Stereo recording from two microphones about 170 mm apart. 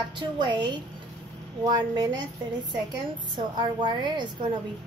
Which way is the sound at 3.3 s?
30° right (ahead or behind).